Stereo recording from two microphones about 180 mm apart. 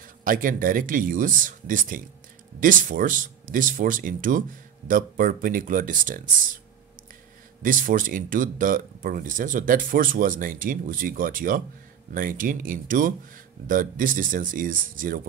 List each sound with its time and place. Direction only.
0.0 s speech: 50° right (ahead or behind)
7.6 s speech: 50° right (ahead or behind)